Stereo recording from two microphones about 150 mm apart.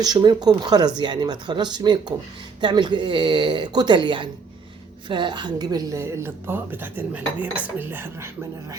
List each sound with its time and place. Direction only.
0.0 s a woman's voice: 30° right (ahead or behind)